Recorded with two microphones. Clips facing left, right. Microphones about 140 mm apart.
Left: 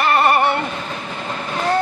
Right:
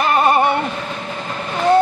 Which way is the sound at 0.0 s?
15° right (ahead or behind).